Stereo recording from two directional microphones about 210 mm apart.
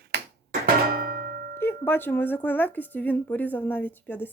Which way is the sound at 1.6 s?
10° left (ahead or behind).